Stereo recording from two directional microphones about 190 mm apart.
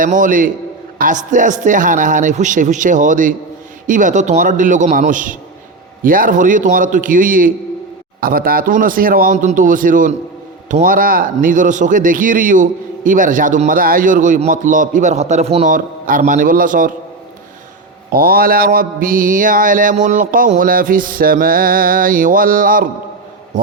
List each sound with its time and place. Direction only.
0.0 s mantra: 45° right (ahead or behind)
18.1 s mantra: 50° right (ahead or behind)